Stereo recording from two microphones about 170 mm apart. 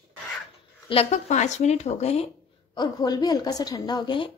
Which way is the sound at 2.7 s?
25° left (ahead or behind).